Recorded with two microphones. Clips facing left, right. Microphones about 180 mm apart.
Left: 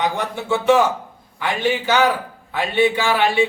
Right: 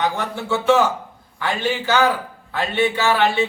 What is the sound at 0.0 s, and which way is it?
A man's voice, 15° left (ahead or behind).